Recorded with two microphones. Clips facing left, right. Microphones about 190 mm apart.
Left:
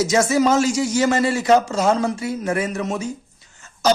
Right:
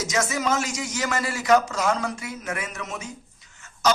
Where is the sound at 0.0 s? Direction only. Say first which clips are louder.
Left 9 dB; 30° left (ahead or behind).